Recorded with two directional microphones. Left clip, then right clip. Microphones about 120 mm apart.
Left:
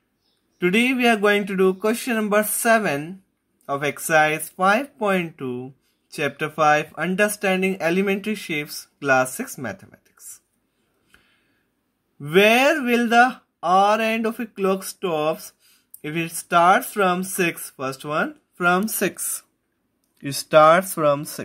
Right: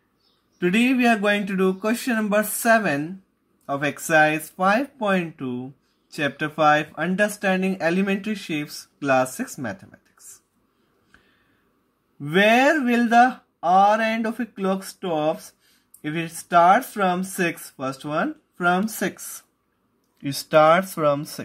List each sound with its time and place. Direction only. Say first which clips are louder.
0.6 s speech: left 1 dB; 30° left (ahead or behind)
12.2 s speech: left 1 dB; 45° left (ahead or behind)
20.2 s speech: left 2 dB; 25° left (ahead or behind)